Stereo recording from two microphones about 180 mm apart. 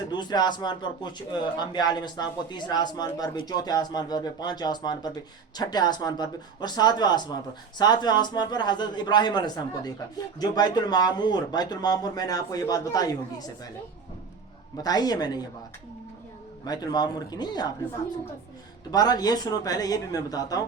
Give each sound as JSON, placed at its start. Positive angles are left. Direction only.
{"t": 0.1, "sound": "speech", "side_deg": 25}
{"t": 14.8, "sound": "speech", "side_deg": 20}
{"t": 16.6, "sound": "speech", "side_deg": 20}
{"t": 18.9, "sound": "speech", "side_deg": 20}